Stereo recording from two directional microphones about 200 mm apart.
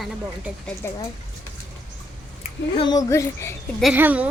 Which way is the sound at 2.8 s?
20° left (ahead or behind).